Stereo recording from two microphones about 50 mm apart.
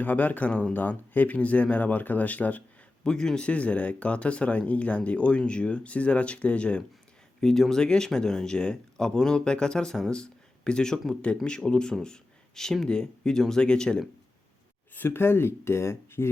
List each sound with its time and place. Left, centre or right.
0.0 s speech: left
3.0 s speech: centre
7.4 s speech: centre
14.9 s speech: left